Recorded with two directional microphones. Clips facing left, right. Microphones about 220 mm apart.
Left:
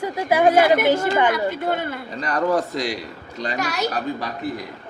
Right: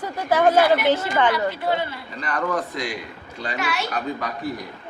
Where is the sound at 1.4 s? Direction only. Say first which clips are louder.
Left 1 dB; 50° left (ahead or behind).